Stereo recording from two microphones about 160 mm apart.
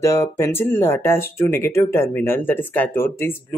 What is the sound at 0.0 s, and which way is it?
Speech, 20° left (ahead or behind).